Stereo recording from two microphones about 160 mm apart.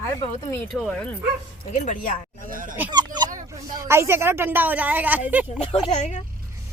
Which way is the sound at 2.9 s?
25° right (ahead or behind).